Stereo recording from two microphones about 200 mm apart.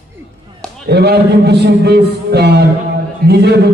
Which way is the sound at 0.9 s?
55° right (ahead or behind).